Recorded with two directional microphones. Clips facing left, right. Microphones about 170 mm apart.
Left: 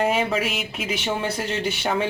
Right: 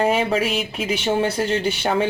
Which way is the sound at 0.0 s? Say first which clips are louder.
Right 3 dB; 35° right (ahead or behind).